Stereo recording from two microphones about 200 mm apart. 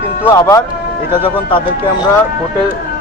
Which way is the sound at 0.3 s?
15° left (ahead or behind).